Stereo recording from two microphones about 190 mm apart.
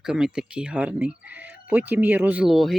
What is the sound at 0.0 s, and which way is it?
Speech, 5° right (ahead or behind).